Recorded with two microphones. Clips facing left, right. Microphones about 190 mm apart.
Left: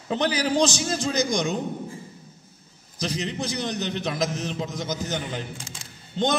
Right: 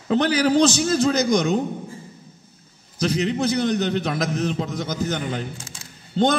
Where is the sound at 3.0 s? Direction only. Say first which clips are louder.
Right 7 dB; 55° right (ahead or behind).